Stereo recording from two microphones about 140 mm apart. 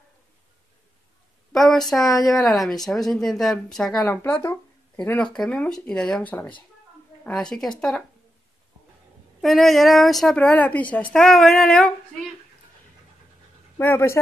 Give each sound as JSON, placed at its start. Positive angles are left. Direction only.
{"t": 1.5, "sound": "a woman's voice", "side_deg": 0}
{"t": 4.0, "sound": "a woman's voice", "side_deg": 15}
{"t": 9.4, "sound": "a woman's voice", "side_deg": 0}
{"t": 13.7, "sound": "speech", "side_deg": 15}